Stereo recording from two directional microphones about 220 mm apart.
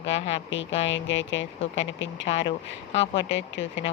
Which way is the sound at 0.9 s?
60° left (ahead or behind).